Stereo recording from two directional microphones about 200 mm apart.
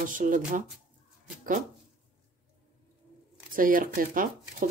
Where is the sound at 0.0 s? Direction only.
40° right (ahead or behind).